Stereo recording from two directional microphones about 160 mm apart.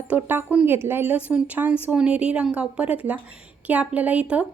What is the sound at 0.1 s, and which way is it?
A woman's voice, 10° right (ahead or behind).